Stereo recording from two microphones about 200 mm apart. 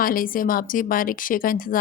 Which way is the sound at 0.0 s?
45° left (ahead or behind).